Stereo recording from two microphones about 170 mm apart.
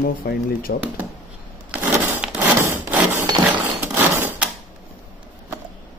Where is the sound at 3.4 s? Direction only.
10° right (ahead or behind).